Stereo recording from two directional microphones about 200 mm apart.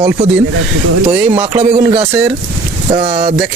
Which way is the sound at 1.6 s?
30° right (ahead or behind).